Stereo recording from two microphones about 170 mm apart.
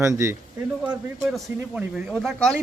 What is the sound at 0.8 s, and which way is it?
Speech, 5° right (ahead or behind).